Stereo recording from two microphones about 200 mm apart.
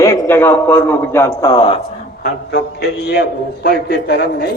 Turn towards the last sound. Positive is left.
turn(degrees=55)  # may be behind; listen again after turning